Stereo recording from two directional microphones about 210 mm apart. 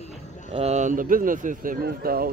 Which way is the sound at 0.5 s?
30° right (ahead or behind).